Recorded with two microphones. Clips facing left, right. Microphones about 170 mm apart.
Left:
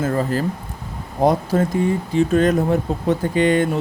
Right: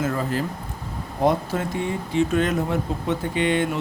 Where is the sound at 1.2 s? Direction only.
40° left (ahead or behind).